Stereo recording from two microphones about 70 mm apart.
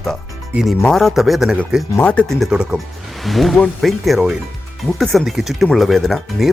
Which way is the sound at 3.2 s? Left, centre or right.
Centre.